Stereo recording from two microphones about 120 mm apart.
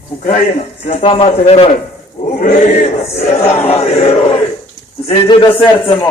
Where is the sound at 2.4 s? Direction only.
70° left (ahead or behind); by 4.3 s 55° left (ahead or behind).